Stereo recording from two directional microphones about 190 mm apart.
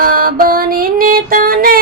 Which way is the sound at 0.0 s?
50° right (ahead or behind).